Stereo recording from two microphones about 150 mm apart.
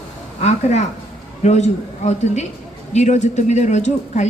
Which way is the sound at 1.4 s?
50° left (ahead or behind).